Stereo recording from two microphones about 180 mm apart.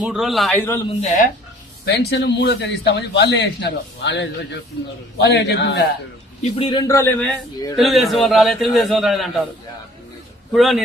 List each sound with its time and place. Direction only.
0.0 s a man's voice: centre (ahead or behind)
0.9 s speech: 45° left (ahead or behind)
1.8 s a man's voice: 70° left (ahead or behind)
6.4 s a man's voice: 30° left (ahead or behind)
7.8 s a man's voice: centre (ahead or behind)
10.5 s a man's voice: centre (ahead or behind)